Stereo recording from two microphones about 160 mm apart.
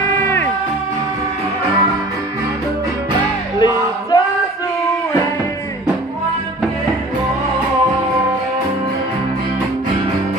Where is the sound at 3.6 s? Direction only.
25° left (ahead or behind).